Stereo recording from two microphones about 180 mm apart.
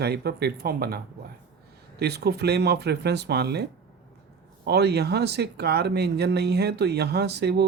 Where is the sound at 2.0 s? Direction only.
65° right (ahead or behind).